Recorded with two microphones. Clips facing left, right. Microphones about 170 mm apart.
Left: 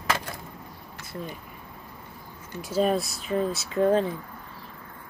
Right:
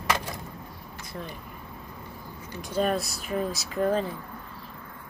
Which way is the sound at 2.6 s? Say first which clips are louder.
Left 2 dB; centre (ahead or behind).